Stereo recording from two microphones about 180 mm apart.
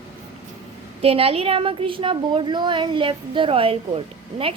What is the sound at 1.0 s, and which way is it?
A woman's voice, 35° right (ahead or behind).